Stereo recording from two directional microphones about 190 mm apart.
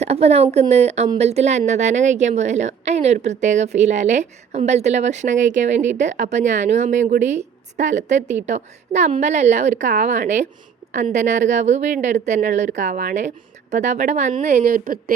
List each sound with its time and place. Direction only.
0.0 s a woman's voice: 35° right (ahead or behind)